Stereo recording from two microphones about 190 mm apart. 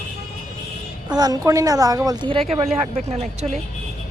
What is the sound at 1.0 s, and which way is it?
A woman's voice, 20° right (ahead or behind).